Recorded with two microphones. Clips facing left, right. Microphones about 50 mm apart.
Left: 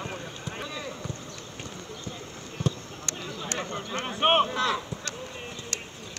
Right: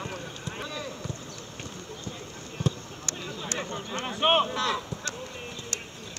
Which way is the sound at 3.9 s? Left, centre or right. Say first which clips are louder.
Left 1 dB; left.